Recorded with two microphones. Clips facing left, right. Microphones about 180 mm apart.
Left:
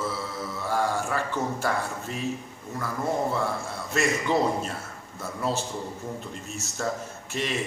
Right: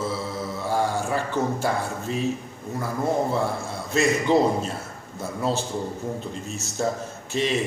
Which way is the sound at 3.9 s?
30° right (ahead or behind).